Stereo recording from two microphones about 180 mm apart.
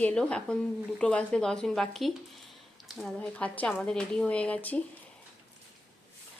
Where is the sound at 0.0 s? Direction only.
5° left (ahead or behind).